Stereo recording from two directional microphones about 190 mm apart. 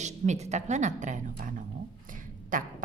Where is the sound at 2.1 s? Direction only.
45° right (ahead or behind).